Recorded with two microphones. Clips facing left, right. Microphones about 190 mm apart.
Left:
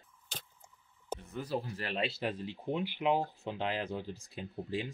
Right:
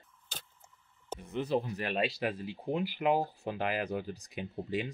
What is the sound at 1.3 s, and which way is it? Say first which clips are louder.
Speech: right 6 dB; 20° right (ahead or behind).